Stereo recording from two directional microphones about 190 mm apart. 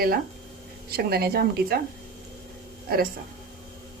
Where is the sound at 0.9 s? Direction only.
55° right (ahead or behind).